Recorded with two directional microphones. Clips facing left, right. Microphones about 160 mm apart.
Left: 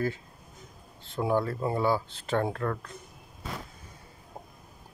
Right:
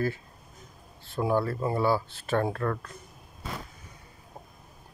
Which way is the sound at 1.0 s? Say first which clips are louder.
Right 1 dB; 20° left (ahead or behind).